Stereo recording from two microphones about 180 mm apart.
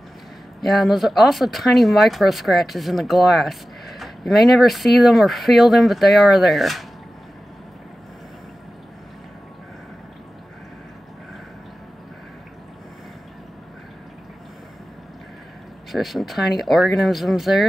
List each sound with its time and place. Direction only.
0.6 s speech: centre (ahead or behind)
15.9 s speech: centre (ahead or behind)